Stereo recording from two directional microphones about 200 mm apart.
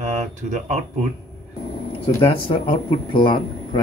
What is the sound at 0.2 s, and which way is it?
Speech, 35° right (ahead or behind).